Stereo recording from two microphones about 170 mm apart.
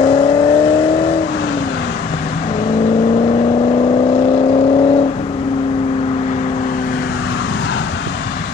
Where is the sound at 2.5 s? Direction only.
35° left (ahead or behind); by 7.1 s 55° left (ahead or behind).